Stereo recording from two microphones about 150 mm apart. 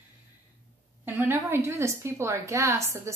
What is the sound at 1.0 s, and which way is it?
A woman's voice, 15° right (ahead or behind).